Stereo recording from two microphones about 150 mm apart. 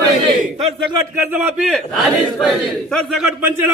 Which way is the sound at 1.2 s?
10° right (ahead or behind).